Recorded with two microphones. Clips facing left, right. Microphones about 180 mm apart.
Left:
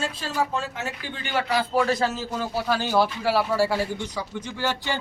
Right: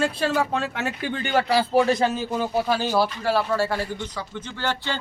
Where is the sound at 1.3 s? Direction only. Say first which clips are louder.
Right 3 dB; 30° right (ahead or behind); by 2.8 s 15° right (ahead or behind).